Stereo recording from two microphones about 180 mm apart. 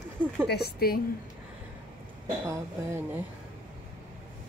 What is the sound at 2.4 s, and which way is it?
Speech, 15° right (ahead or behind).